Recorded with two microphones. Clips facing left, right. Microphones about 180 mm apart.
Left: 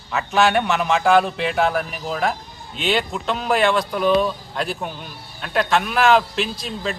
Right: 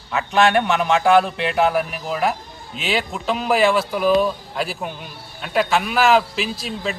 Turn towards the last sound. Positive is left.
turn(degrees=0)  # may be behind; listen again after turning